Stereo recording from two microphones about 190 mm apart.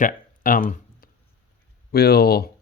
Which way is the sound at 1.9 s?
55° left (ahead or behind).